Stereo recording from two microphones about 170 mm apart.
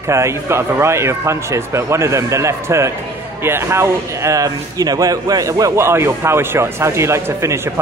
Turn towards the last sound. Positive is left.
turn(degrees=-15)  # may be behind; listen again after turning